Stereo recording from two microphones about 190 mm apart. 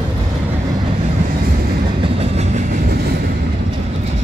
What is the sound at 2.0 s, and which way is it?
Train, 35° right (ahead or behind).